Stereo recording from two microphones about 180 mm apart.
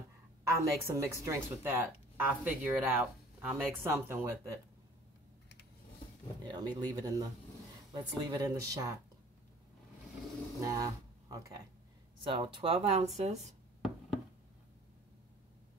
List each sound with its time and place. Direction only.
0.4 s speech: 15° right (ahead or behind)
6.4 s speech: 25° right (ahead or behind)
10.6 s a sound: 20° right (ahead or behind)
12.2 s speech: 30° right (ahead or behind)